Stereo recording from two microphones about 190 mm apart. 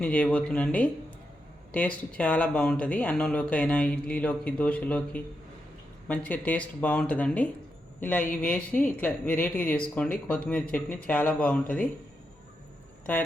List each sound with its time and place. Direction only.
0.0 s speech: 5° left (ahead or behind)
13.1 s speech: 10° left (ahead or behind)